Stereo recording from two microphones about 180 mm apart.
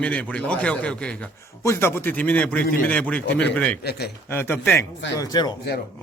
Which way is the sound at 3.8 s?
60° left (ahead or behind).